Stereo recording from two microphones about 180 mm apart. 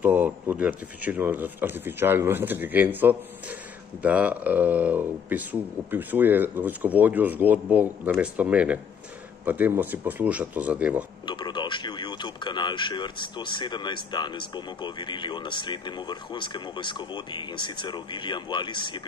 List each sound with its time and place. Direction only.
0.0 s speech: 10° right (ahead or behind)
11.2 s speech: 25° left (ahead or behind)